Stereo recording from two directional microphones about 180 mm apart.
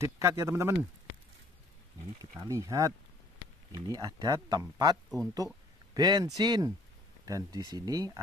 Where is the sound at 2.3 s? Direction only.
15° right (ahead or behind).